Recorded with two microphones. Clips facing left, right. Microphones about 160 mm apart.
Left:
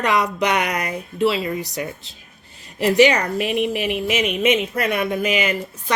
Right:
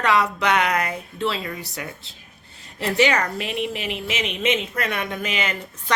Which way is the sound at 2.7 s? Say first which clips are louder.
Left 5 dB; 15° left (ahead or behind).